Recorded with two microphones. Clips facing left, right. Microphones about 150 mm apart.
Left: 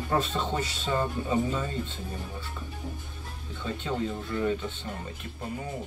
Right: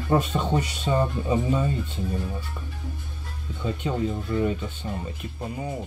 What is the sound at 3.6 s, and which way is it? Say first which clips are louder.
Speech: right 4 dB; 15° right (ahead or behind).